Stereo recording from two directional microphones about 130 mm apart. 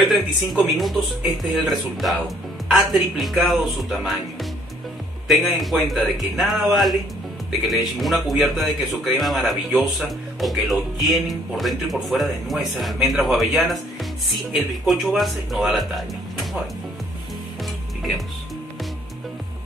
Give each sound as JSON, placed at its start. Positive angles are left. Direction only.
{"t": 0.0, "sound": "speech", "side_deg": 0}